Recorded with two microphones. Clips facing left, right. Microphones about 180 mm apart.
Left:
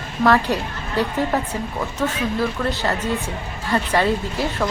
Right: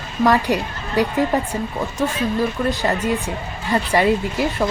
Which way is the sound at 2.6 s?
15° right (ahead or behind).